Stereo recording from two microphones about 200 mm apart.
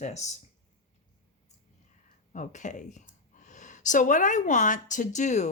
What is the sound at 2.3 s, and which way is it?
Speech, 35° left (ahead or behind).